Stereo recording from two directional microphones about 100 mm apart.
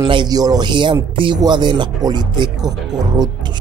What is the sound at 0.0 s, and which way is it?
Speech, 50° right (ahead or behind).